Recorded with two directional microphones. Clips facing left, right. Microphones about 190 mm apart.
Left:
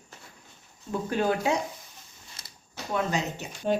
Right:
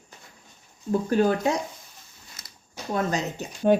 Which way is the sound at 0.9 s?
40° right (ahead or behind).